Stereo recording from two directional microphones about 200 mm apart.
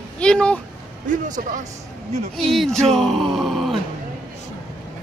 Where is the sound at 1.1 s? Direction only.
40° right (ahead or behind).